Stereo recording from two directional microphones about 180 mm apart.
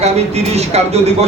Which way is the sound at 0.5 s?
35° right (ahead or behind).